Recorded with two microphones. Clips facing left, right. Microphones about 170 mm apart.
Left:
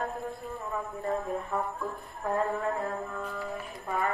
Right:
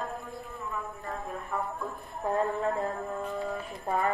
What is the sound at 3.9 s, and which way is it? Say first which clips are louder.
Clip-clop: right 2 dB; 35° right (ahead or behind).